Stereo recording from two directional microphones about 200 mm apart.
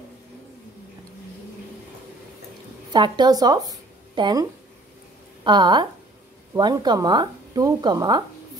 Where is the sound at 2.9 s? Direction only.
20° right (ahead or behind).